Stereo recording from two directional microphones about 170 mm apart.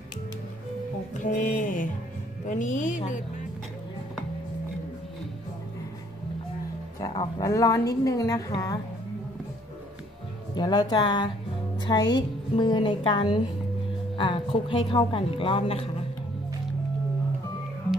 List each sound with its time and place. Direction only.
1.1 s music: 50° left (ahead or behind)
2.4 s a woman's voice: 45° left (ahead or behind)
7.0 s a woman's voice: 20° left (ahead or behind)
10.5 s a woman's voice: 25° left (ahead or behind)